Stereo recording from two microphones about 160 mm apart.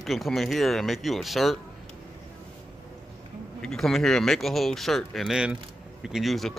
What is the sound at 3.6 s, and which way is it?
Speech, 5° left (ahead or behind).